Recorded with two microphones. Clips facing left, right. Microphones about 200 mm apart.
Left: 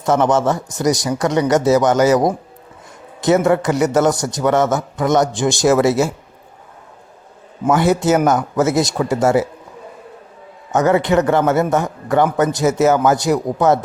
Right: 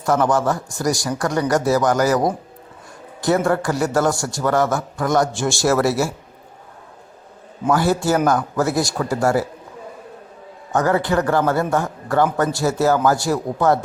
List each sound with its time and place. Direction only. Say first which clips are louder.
0.0 s a man's voice: left 3 dB; 20° left (ahead or behind)
7.7 s a man's voice: left 3 dB; 20° left (ahead or behind)
10.7 s a man's voice: left 4 dB; 20° left (ahead or behind)